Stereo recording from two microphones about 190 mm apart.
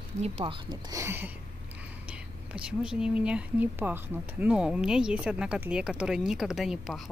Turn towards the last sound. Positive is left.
turn(degrees=0)  # may be behind; listen again after turning